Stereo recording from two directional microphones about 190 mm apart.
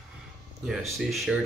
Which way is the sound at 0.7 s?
Centre (ahead or behind).